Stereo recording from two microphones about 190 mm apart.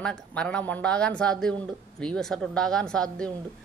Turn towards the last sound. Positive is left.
turn(degrees=5)  # may be behind; listen again after turning